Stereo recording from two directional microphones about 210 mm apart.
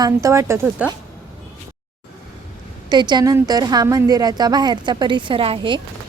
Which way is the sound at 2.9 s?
20° right (ahead or behind).